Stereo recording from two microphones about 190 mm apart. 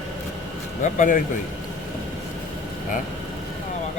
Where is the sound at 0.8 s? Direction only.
45° left (ahead or behind).